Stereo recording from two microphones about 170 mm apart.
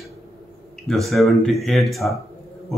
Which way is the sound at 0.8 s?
Centre (ahead or behind).